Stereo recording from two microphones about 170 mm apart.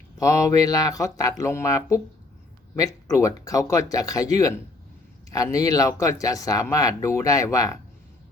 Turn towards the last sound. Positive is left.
turn(degrees=20)  # may be behind; listen again after turning